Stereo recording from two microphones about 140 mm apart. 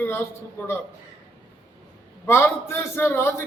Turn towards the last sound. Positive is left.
turn(degrees=15)  # may be behind; listen again after turning